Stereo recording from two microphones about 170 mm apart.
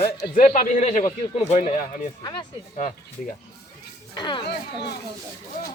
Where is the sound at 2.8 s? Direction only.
50° left (ahead or behind).